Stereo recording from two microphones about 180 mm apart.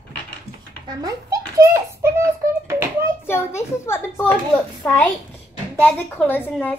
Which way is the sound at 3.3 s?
15° left (ahead or behind).